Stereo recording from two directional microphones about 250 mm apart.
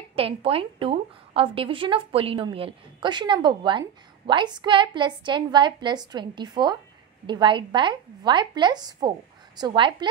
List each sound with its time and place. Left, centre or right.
0.1 s a woman's voice: right